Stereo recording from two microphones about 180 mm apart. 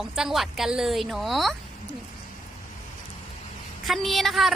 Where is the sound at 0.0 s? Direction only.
Centre (ahead or behind).